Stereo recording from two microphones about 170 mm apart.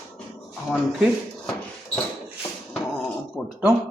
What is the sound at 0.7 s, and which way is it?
Speech, centre (ahead or behind).